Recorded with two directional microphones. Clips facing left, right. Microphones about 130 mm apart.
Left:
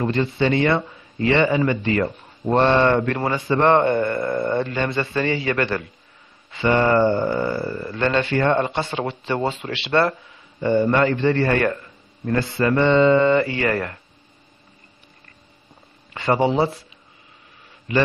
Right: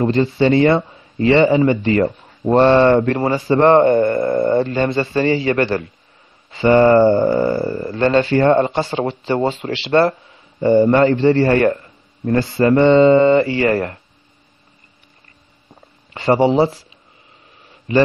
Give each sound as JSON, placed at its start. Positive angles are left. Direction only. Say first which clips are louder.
{"t": 0.0, "sound": "speech", "louder": "right 5 dB", "side_deg": -35}
{"t": 16.1, "sound": "speech", "louder": "right 5 dB", "side_deg": -30}
{"t": 17.9, "sound": "a man's voice", "louder": "right 6 dB", "side_deg": -30}